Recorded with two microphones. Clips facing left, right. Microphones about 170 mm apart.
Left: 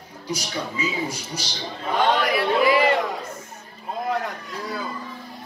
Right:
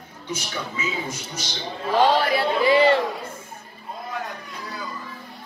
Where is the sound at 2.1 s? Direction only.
30° right (ahead or behind).